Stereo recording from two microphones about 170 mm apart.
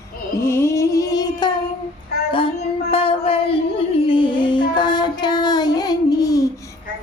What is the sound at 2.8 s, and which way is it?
Music, 35° left (ahead or behind).